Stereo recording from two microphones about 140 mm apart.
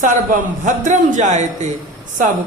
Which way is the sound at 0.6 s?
60° right (ahead or behind).